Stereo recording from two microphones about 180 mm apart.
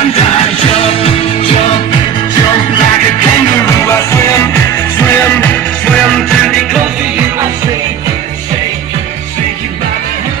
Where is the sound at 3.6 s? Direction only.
15° left (ahead or behind); by 7.5 s 5° right (ahead or behind).